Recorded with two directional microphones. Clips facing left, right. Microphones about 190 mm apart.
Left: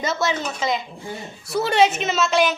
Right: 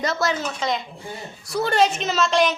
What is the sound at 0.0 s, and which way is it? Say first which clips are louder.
A woman's voice: even; centre (ahead or behind).